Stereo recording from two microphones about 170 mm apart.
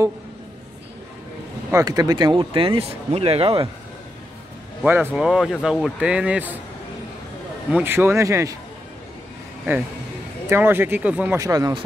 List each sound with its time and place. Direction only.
1.7 s speech: 20° right (ahead or behind)
4.8 s speech: 10° right (ahead or behind)
7.7 s speech: 15° right (ahead or behind)
10.5 s speech: 10° right (ahead or behind)